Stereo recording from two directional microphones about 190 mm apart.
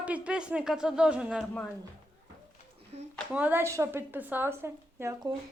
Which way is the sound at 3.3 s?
10° right (ahead or behind).